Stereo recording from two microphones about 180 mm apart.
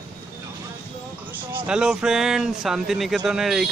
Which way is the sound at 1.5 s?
5° right (ahead or behind).